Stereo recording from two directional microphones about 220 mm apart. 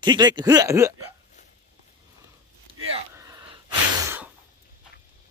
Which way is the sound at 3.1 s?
15° right (ahead or behind).